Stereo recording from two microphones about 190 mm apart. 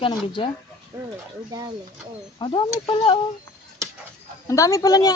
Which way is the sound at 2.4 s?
25° left (ahead or behind).